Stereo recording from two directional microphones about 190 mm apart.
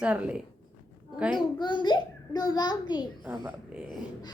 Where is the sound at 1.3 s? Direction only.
25° left (ahead or behind).